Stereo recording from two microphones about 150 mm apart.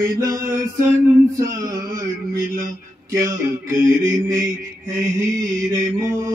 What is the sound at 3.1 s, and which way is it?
Mantra, 20° right (ahead or behind).